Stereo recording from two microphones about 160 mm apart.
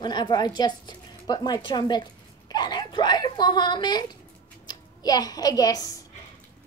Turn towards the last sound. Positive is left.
turn(degrees=25)  # may be behind; listen again after turning